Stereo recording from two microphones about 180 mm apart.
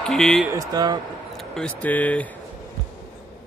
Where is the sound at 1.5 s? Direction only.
5° left (ahead or behind).